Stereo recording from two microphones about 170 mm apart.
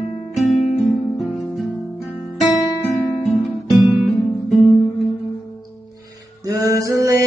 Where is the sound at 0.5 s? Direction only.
45° left (ahead or behind).